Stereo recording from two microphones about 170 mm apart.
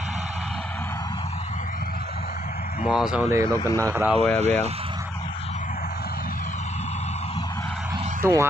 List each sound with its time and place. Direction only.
2.8 s speech: 5° right (ahead or behind)
3.2 s speech: 15° right (ahead or behind)
3.5 s speech: 20° left (ahead or behind)
3.8 s speech: 10° right (ahead or behind)
4.4 s speech: 40° right (ahead or behind)
8.2 s speech: 15° right (ahead or behind)